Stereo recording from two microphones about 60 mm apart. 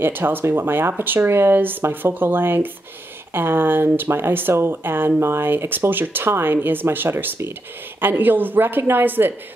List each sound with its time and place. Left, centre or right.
0.0 s speech: right